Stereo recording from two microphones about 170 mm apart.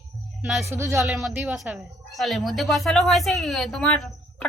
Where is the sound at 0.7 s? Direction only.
15° right (ahead or behind).